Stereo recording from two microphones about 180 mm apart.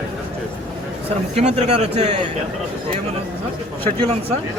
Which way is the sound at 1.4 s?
40° right (ahead or behind).